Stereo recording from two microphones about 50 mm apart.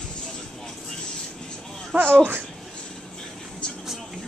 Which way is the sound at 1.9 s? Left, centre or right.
Right.